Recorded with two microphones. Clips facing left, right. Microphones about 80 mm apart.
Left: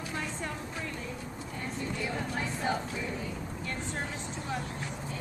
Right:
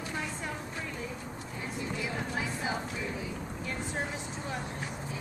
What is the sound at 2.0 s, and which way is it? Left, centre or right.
Music, centre.